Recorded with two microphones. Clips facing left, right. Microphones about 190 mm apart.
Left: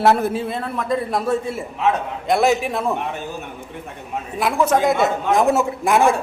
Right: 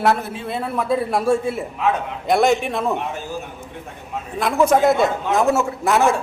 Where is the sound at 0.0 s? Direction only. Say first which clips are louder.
Left 3 dB; 35° left (ahead or behind).